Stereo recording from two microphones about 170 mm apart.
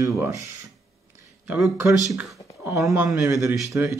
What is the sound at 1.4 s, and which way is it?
Speech, 10° right (ahead or behind).